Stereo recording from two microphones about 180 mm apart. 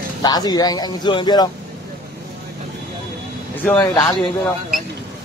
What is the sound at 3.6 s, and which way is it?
Speech, 15° left (ahead or behind).